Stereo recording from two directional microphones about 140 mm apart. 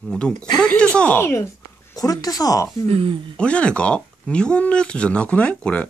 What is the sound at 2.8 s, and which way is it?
Speech, 45° right (ahead or behind).